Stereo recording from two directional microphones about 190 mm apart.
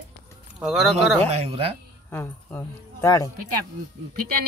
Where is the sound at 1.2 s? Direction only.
35° right (ahead or behind).